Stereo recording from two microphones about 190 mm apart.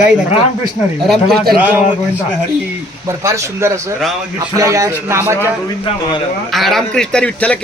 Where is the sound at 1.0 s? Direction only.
Centre (ahead or behind).